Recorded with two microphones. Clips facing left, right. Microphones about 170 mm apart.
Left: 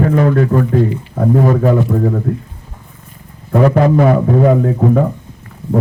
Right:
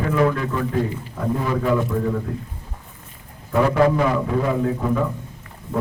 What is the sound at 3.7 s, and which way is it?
A man's voice, 50° left (ahead or behind).